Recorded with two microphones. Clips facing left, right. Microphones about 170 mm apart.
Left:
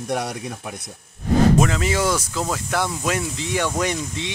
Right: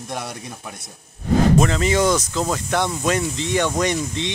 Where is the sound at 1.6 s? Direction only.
5° left (ahead or behind).